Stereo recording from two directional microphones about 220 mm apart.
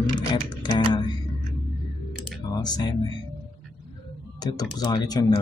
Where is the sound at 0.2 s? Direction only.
20° left (ahead or behind).